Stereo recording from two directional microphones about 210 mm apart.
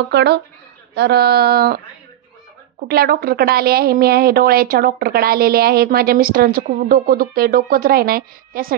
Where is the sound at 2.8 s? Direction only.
45° right (ahead or behind).